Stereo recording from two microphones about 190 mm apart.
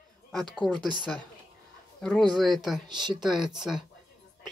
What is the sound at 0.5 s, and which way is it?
Speech, 5° left (ahead or behind).